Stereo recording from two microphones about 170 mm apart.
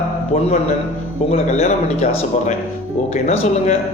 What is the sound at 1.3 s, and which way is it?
Speech, 40° left (ahead or behind).